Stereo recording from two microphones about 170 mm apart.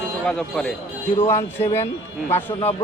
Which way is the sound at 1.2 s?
15° left (ahead or behind).